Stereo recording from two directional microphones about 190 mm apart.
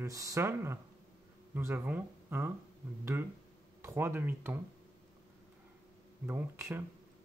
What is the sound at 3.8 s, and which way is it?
Speech, 15° right (ahead or behind).